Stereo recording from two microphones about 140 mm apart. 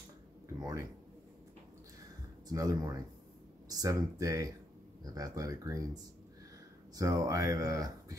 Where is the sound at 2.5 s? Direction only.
25° right (ahead or behind).